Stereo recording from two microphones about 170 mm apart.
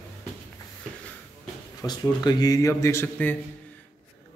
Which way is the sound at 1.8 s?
25° left (ahead or behind).